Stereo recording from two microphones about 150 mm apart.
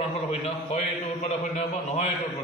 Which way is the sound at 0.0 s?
45° left (ahead or behind).